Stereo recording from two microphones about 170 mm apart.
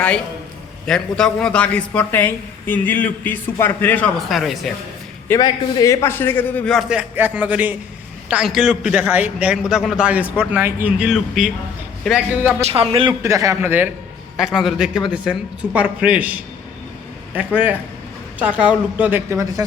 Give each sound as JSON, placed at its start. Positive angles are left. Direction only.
{"t": 0.9, "sound": "a woman's voice", "side_deg": 5}
{"t": 4.3, "sound": "a man's voice", "side_deg": 0}
{"t": 5.4, "sound": "a woman's voice", "side_deg": 20}
{"t": 6.7, "sound": "a man's voice", "side_deg": 0}
{"t": 12.6, "sound": "a man's voice", "side_deg": -35}
{"t": 13.2, "sound": "a man's voice", "side_deg": -20}